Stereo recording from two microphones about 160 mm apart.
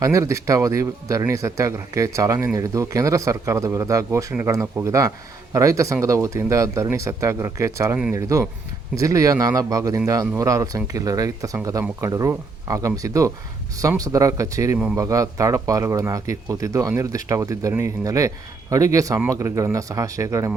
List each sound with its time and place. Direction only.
0.0 s speech: 20° right (ahead or behind)